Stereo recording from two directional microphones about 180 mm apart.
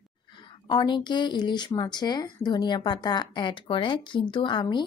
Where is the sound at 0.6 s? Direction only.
25° left (ahead or behind).